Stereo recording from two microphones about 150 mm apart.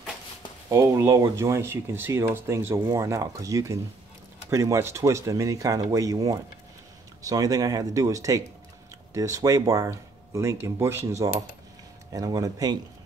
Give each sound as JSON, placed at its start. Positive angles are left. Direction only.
{"t": 0.7, "sound": "speech", "side_deg": -20}